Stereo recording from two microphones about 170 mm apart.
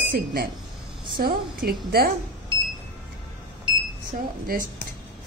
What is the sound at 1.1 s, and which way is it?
Speech, 60° right (ahead or behind).